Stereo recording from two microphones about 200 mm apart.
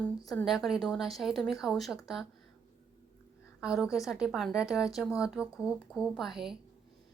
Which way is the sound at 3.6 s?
5° right (ahead or behind).